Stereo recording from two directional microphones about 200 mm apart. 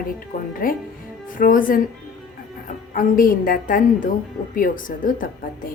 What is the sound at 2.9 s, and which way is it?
A woman's voice, 45° left (ahead or behind).